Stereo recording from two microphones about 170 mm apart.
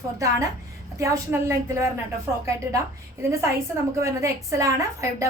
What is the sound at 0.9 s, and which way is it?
Speech, 20° right (ahead or behind).